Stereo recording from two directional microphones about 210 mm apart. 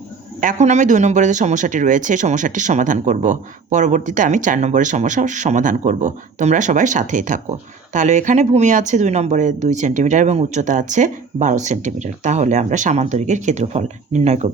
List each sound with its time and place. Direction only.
0.3 s speech: 35° right (ahead or behind)